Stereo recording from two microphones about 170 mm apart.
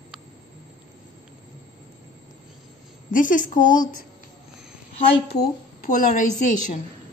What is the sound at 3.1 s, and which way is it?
Speech, 50° left (ahead or behind).